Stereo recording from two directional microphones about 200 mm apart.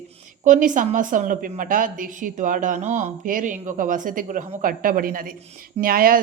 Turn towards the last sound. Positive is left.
turn(degrees=-45)  # may be behind; listen again after turning